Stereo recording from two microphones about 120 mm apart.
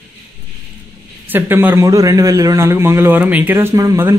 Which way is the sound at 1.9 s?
30° right (ahead or behind).